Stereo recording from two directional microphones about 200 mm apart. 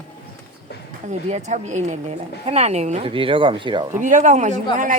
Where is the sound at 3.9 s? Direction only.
40° right (ahead or behind).